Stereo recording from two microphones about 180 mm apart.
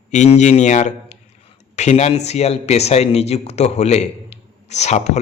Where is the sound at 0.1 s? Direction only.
40° left (ahead or behind).